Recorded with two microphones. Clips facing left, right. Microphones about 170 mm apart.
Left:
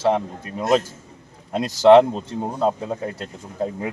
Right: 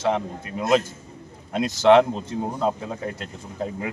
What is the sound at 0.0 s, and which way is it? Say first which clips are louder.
Speech: left 3 dB; 35° left (ahead or behind).